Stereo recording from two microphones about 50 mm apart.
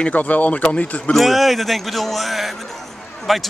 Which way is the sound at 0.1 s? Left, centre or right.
Left.